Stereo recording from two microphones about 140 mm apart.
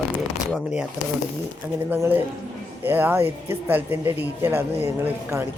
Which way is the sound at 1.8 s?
15° right (ahead or behind).